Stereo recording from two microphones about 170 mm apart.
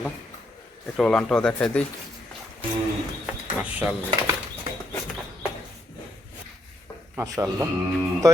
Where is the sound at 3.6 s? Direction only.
10° right (ahead or behind).